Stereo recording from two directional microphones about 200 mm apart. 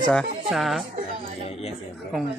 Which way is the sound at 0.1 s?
Centre (ahead or behind).